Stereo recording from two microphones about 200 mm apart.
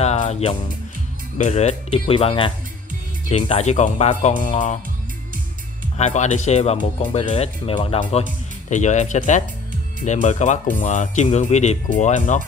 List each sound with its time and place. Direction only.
0.0 s music: 35° left (ahead or behind)
1.4 s speech: 35° left (ahead or behind)
5.9 s speech: 35° left (ahead or behind)